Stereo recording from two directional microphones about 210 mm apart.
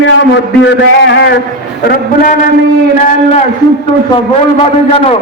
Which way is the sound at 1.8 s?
40° left (ahead or behind).